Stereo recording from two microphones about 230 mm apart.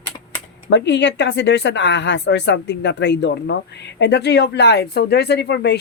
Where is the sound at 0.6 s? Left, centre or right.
Left.